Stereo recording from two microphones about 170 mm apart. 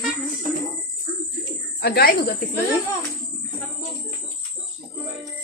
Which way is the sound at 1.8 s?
65° left (ahead or behind).